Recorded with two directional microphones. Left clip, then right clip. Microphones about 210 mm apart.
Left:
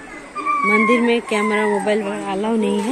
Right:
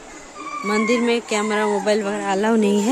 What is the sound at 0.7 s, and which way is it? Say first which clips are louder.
Speech: left 2 dB; 15° right (ahead or behind).